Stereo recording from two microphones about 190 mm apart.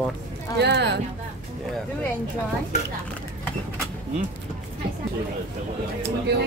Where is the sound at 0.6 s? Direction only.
65° right (ahead or behind).